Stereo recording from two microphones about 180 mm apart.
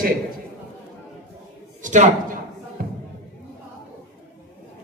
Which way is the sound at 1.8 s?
45° right (ahead or behind).